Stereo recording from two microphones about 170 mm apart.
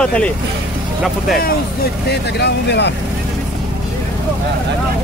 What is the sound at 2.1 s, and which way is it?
Speech, 80° left.